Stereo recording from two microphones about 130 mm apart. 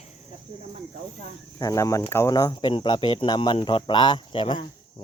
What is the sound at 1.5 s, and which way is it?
Speech, 30° left (ahead or behind).